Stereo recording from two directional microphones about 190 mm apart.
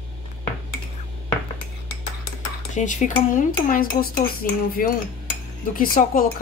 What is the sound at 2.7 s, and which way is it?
Speech, 40° left (ahead or behind).